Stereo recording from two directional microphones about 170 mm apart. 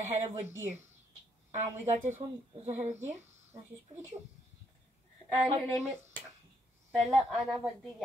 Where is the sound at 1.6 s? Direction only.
45° right (ahead or behind).